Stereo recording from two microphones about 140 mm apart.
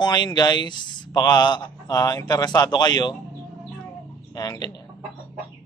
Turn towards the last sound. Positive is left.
turn(degrees=30)  # may be behind; listen again after turning